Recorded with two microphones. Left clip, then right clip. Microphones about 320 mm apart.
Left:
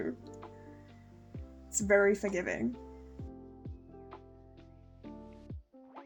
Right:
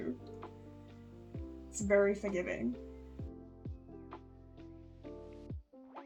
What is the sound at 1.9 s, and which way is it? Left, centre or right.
Speech, left.